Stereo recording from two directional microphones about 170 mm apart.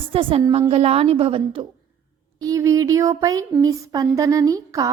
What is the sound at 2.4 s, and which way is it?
Speech, 20° right (ahead or behind).